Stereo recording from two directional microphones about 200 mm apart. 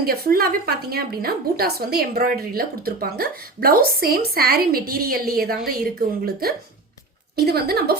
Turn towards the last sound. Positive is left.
turn(degrees=-50)  # may be behind; listen again after turning